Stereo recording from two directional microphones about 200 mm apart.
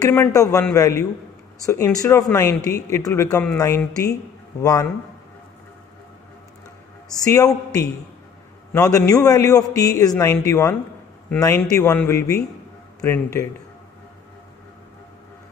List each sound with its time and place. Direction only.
0.1 s speech: 15° left (ahead or behind)
7.2 s speech: 15° left (ahead or behind)
8.7 s speech: 15° left (ahead or behind)